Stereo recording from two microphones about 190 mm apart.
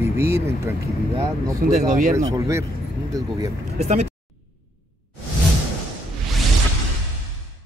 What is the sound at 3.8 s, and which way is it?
Speech, 35° right (ahead or behind).